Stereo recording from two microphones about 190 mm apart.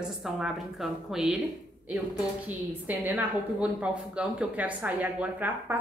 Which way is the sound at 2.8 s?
10° right (ahead or behind).